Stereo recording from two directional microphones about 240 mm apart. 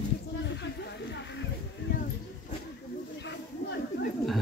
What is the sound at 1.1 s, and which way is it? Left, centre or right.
Music, left.